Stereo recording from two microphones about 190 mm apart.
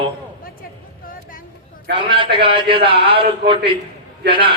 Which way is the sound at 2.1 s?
25° right (ahead or behind).